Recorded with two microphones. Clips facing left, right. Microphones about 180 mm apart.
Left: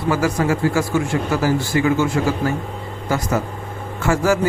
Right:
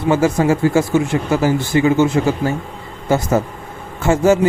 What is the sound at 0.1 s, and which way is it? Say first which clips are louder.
Speech: right 4 dB; 25° right (ahead or behind).